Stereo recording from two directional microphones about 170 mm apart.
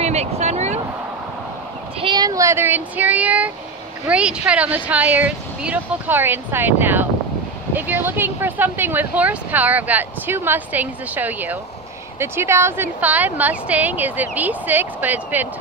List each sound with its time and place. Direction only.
0.0 s vehicle: 40° right (ahead or behind)
2.0 s speech: 25° right (ahead or behind); by 15.4 s 10° right (ahead or behind)